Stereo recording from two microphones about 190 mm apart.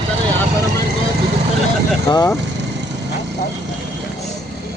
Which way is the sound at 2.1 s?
20° left (ahead or behind).